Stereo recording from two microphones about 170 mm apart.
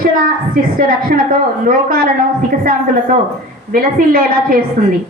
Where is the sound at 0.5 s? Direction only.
60° right (ahead or behind).